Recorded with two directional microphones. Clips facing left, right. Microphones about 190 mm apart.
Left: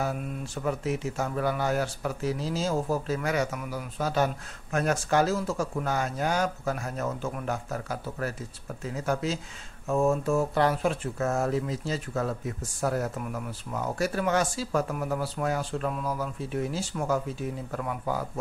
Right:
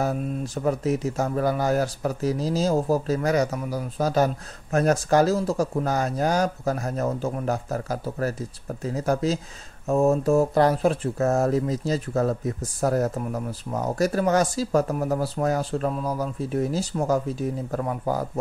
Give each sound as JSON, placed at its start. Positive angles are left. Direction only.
{"t": 0.0, "sound": "speech", "side_deg": -40}